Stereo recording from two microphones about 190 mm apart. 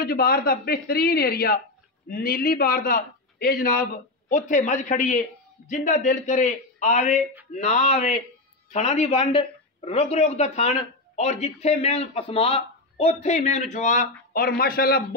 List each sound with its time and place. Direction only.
0.0 s a man's voice: 55° left (ahead or behind)